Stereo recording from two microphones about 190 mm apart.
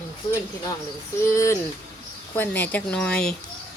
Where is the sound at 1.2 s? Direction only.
15° left (ahead or behind).